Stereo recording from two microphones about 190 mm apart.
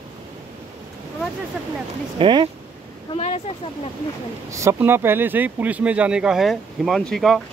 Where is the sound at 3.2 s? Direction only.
35° left (ahead or behind).